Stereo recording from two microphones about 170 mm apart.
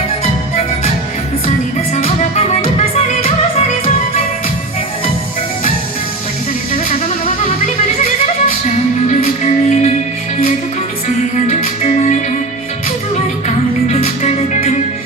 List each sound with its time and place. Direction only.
2.3 s music: 40° left (ahead or behind)
8.0 s music: 50° left (ahead or behind)
11.4 s music: 45° left (ahead or behind)
13.8 s music: 40° left (ahead or behind)